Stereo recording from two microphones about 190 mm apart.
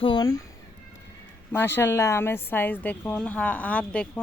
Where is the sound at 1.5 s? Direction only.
10° left (ahead or behind).